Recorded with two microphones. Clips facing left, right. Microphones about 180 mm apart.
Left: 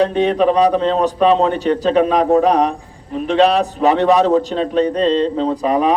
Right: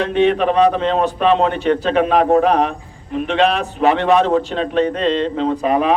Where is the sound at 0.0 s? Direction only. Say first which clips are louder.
Left 1 dB; 40° left (ahead or behind).